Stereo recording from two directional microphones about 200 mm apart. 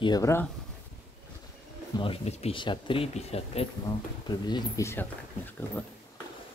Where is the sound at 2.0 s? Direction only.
30° left (ahead or behind); by 5.0 s 15° left (ahead or behind).